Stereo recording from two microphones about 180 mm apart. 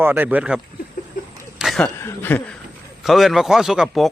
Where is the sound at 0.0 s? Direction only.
10° right (ahead or behind).